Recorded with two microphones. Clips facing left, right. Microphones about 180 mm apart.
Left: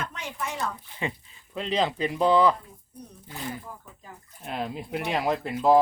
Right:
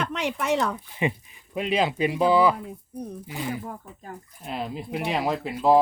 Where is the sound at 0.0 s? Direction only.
75° right (ahead or behind).